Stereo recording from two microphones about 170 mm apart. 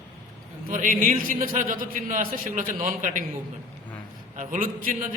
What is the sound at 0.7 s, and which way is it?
A man's voice, 50° right (ahead or behind).